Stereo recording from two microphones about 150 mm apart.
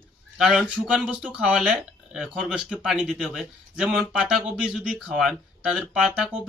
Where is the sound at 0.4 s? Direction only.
5° right (ahead or behind).